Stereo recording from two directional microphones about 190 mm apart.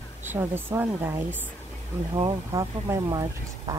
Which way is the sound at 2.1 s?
25° right (ahead or behind).